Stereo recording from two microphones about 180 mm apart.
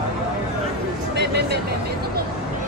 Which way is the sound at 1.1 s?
70° right (ahead or behind).